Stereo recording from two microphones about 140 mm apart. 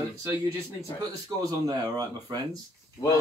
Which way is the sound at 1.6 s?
25° right (ahead or behind).